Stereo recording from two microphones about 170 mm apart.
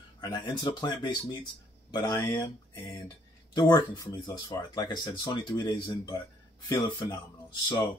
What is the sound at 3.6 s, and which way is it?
Speech, 25° left (ahead or behind).